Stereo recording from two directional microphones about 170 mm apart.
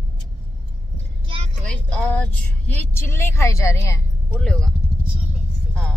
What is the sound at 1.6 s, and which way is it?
A woman's voice, 10° left (ahead or behind).